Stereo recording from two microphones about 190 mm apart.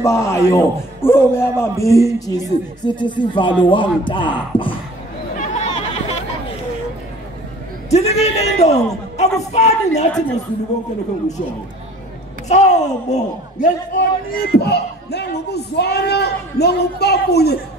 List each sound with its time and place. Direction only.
0.0 s a man's voice: 15° left (ahead or behind)
5.4 s a sound: 40° left (ahead or behind)
7.9 s a man's voice: 35° left (ahead or behind)
12.4 s speech: 35° left (ahead or behind)
13.9 s speech: 50° left (ahead or behind)